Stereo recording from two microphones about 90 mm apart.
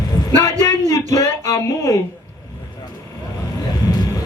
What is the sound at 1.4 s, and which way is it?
Speech, 40° left (ahead or behind).